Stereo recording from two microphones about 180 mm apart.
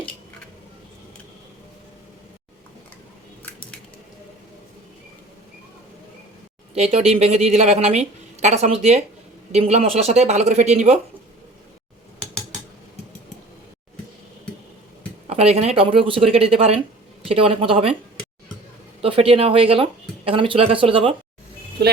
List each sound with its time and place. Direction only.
6.7 s a woman's voice: 35° right (ahead or behind)
15.3 s a woman's voice: 35° right (ahead or behind)
19.0 s a woman's voice: 30° right (ahead or behind)